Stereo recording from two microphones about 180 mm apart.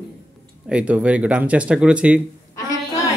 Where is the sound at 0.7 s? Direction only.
5° right (ahead or behind).